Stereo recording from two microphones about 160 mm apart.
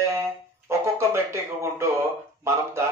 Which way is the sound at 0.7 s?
15° right (ahead or behind).